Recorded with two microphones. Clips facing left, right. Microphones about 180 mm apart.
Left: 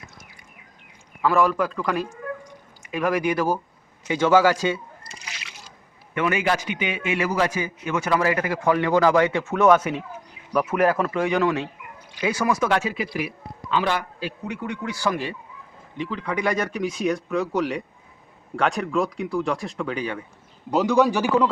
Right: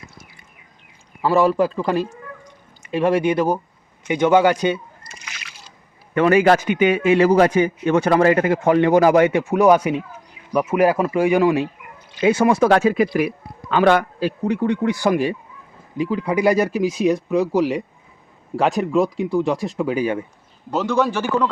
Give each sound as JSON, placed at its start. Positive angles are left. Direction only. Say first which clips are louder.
{"t": 1.2, "sound": "a man's voice", "louder": "right 4 dB", "side_deg": -35}
{"t": 5.0, "sound": "splash", "louder": "right 1 dB", "side_deg": 30}
{"t": 6.1, "sound": "a man's voice", "louder": "right 9 dB", "side_deg": -40}
{"t": 12.2, "sound": "a man's voice", "louder": "right 7 dB", "side_deg": -25}
{"t": 12.7, "sound": "a man's voice", "louder": "right 8 dB", "side_deg": -45}
{"t": 14.2, "sound": "a man's voice", "louder": "right 10 dB", "side_deg": -35}
{"t": 15.0, "sound": "speech", "louder": "right 7 dB", "side_deg": -15}
{"t": 20.7, "sound": "a man's voice", "louder": "left 1 dB", "side_deg": 15}